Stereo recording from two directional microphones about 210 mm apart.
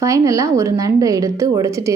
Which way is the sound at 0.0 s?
15° right (ahead or behind).